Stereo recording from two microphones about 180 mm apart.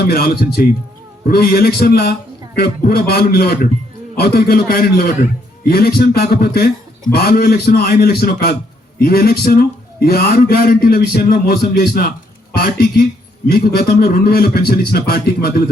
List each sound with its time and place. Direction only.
0.0 s a man's voice: 60° left (ahead or behind)